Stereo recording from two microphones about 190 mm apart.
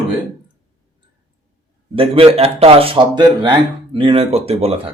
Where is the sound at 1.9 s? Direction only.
30° right (ahead or behind).